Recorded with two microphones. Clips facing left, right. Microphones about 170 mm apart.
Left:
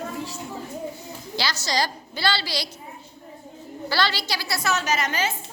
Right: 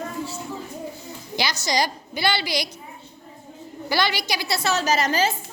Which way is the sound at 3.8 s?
15° right (ahead or behind).